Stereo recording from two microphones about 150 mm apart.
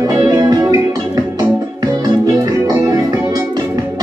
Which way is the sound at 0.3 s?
25° right (ahead or behind).